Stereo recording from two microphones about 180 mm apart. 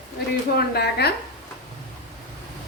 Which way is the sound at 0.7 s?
65° left (ahead or behind).